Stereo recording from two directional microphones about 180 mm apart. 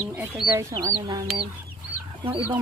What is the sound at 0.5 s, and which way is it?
Speech, 20° right (ahead or behind).